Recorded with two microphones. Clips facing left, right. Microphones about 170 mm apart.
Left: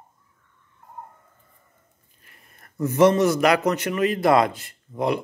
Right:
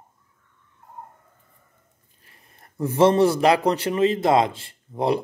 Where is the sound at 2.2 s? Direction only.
30° right (ahead or behind).